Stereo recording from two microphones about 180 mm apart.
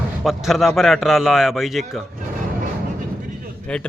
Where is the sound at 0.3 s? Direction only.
Centre (ahead or behind).